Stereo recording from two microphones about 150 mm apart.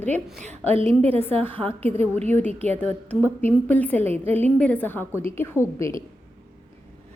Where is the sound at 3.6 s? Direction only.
10° left (ahead or behind).